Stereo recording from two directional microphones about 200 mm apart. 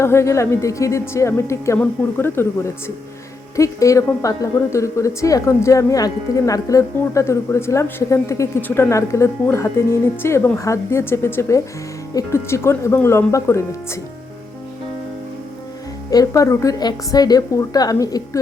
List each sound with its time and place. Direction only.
0.0 s a woman's voice: 15° left (ahead or behind)
16.0 s a woman's voice: 15° left (ahead or behind)